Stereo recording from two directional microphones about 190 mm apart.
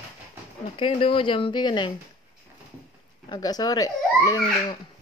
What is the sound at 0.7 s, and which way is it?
Speech, 25° left (ahead or behind).